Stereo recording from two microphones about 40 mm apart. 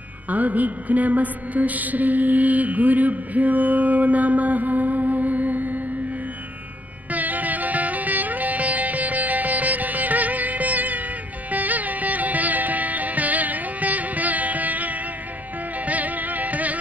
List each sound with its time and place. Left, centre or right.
0.3 s mantra: right
7.1 s music: right